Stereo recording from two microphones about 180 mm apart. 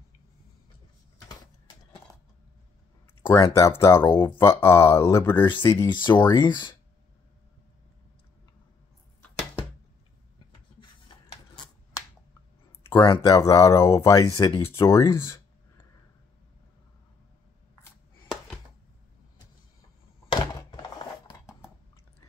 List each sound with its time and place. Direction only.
3.3 s speech: 25° left (ahead or behind)
5.4 s speech: 25° left (ahead or behind)
13.0 s speech: 25° left (ahead or behind)
20.2 s thunk: 25° left (ahead or behind)